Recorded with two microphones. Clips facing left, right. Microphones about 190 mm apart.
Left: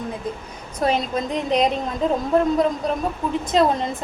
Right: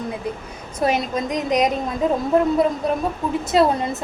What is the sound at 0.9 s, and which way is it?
A woman's voice, 10° right (ahead or behind).